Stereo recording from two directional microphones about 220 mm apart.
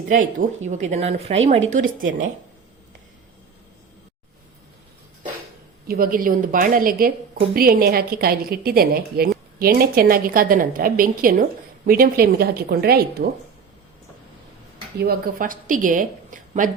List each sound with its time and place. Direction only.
0.1 s a woman's voice: 35° right (ahead or behind)
5.9 s a woman's voice: 40° right (ahead or behind)
14.9 s a woman's voice: 40° right (ahead or behind)